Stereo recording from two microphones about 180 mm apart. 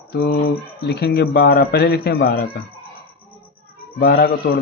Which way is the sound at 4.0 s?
55° left (ahead or behind).